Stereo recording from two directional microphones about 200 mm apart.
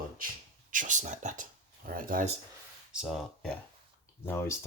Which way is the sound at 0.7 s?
40° right (ahead or behind).